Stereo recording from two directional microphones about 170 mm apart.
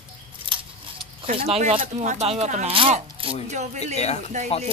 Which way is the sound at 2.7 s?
30° right (ahead or behind).